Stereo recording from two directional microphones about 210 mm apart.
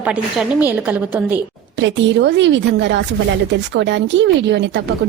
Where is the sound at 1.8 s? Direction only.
60° right (ahead or behind).